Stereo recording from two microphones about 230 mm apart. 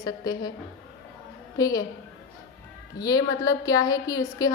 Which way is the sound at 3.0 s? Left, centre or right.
Centre.